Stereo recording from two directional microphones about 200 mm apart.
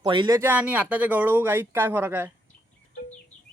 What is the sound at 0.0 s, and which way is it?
Speech, 25° right (ahead or behind).